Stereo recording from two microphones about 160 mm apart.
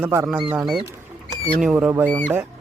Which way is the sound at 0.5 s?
5° right (ahead or behind).